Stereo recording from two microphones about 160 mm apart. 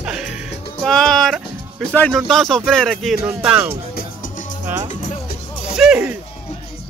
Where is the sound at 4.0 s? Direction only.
60° left (ahead or behind).